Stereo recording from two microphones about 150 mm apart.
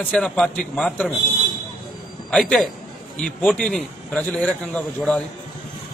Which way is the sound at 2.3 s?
5° left (ahead or behind).